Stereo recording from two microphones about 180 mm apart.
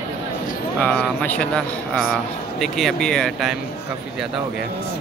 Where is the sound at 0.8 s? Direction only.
5° left (ahead or behind).